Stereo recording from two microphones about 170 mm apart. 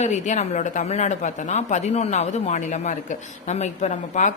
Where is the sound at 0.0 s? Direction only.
45° left (ahead or behind).